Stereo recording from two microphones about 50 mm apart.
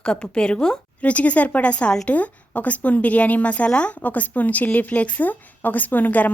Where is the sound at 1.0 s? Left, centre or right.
Left.